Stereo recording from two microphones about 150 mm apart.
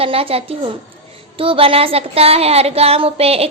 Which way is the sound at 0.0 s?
40° right (ahead or behind).